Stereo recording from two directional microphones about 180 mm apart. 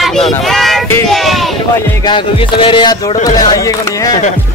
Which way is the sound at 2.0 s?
25° left (ahead or behind).